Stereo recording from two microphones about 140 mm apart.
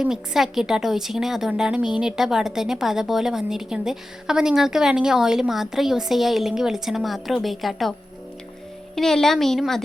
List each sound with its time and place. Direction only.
0.0 s a woman's voice: 5° right (ahead or behind)
9.0 s a woman's voice: 5° left (ahead or behind)